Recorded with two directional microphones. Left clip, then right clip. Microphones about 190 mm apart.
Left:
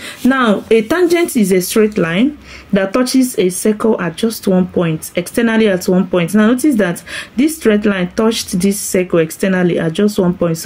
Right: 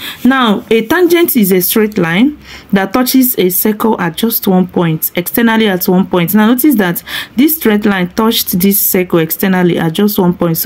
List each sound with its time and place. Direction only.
0.3 s speech: 30° right (ahead or behind)